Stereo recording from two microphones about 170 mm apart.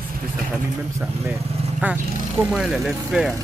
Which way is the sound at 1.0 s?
5° right (ahead or behind).